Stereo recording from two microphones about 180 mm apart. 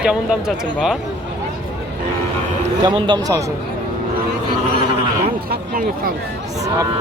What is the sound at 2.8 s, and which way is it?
Speech, 25° right (ahead or behind).